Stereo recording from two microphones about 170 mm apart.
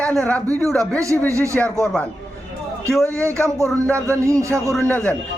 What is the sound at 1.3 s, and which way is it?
Speech, 15° right (ahead or behind).